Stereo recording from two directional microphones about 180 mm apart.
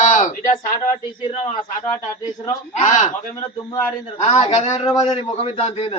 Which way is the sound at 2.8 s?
40° left (ahead or behind).